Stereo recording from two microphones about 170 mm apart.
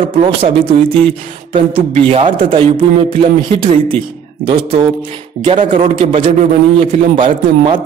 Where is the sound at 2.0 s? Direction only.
30° right (ahead or behind).